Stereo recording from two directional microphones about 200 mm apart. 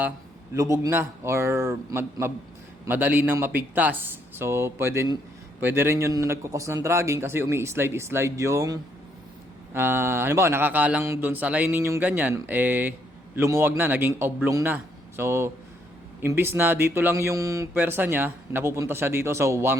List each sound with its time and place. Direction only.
0.5 s speech: 15° right (ahead or behind)